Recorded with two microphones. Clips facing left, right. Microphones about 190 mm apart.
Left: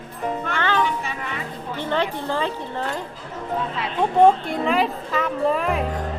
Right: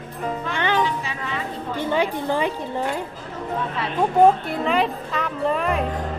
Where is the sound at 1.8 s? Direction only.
10° right (ahead or behind).